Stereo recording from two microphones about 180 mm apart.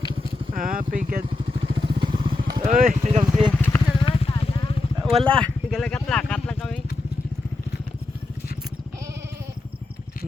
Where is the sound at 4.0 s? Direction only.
30° left (ahead or behind).